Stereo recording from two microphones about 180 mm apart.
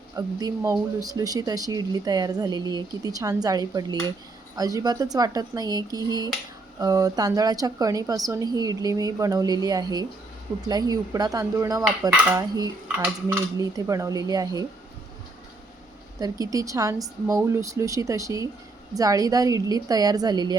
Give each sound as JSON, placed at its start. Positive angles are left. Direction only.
{"t": 0.2, "sound": "speech", "side_deg": -20}
{"t": 16.2, "sound": "speech", "side_deg": -20}